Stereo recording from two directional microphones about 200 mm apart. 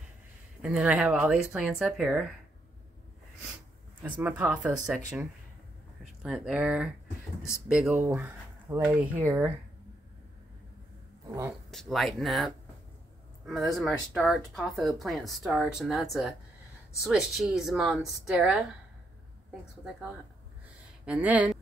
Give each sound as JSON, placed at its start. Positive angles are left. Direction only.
{"t": 0.6, "sound": "speech", "side_deg": -5}
{"t": 4.0, "sound": "speech", "side_deg": -5}
{"t": 6.2, "sound": "speech", "side_deg": -5}
{"t": 11.2, "sound": "speech", "side_deg": -15}
{"t": 11.7, "sound": "speech", "side_deg": 0}
{"t": 21.0, "sound": "speech", "side_deg": -5}